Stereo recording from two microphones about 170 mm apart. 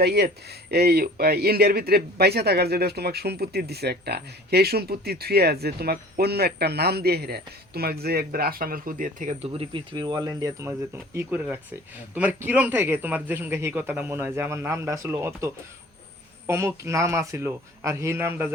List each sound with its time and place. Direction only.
0.0 s speech: 70° right (ahead or behind); by 9.3 s 50° right (ahead or behind)
9.4 s speech: 35° right (ahead or behind); by 18.5 s 15° right (ahead or behind)